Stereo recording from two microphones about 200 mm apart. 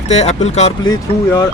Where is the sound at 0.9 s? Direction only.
15° left (ahead or behind).